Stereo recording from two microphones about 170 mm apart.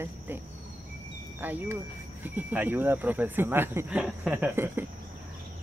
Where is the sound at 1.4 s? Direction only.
10° right (ahead or behind).